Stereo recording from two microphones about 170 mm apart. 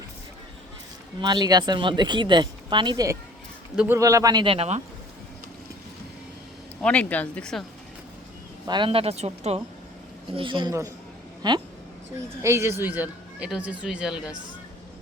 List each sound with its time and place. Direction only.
1.2 s speech: 25° right (ahead or behind)
6.8 s speech: 5° left (ahead or behind)
8.6 s speech: 25° right (ahead or behind); by 14.3 s 5° right (ahead or behind)